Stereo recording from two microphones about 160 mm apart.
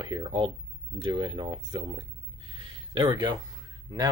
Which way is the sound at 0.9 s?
30° right (ahead or behind).